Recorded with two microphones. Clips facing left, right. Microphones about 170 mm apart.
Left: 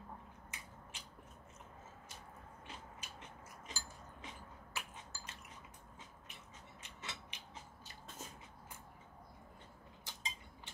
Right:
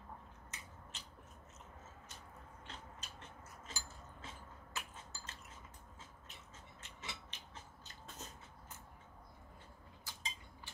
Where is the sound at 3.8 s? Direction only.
15° left (ahead or behind).